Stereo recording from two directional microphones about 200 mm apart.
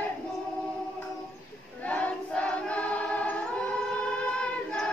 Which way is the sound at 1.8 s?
5° left (ahead or behind).